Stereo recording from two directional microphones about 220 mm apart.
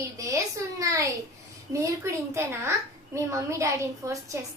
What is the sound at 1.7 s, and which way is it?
A child's voice, 15° right (ahead or behind).